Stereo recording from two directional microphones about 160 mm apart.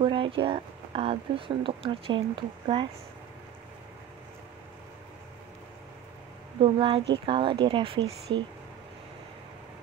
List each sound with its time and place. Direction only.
0.0 s speech: 35° right (ahead or behind)
6.6 s speech: 30° right (ahead or behind)